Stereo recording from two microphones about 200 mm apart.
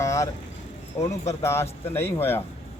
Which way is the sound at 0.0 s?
15° left (ahead or behind).